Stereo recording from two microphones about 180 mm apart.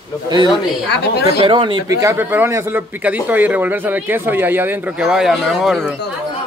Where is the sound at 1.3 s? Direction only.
30° right (ahead or behind).